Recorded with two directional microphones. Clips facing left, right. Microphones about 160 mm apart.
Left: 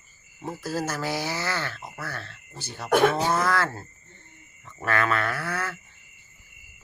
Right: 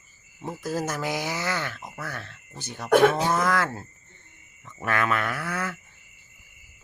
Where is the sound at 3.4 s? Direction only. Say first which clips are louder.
Even; 15° right (ahead or behind).